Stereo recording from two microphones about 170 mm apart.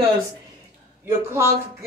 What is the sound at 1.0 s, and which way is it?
Speech, 15° right (ahead or behind).